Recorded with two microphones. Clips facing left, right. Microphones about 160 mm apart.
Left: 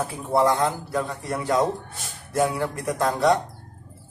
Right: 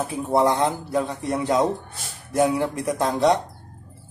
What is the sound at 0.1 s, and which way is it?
A man's voice, 20° right (ahead or behind).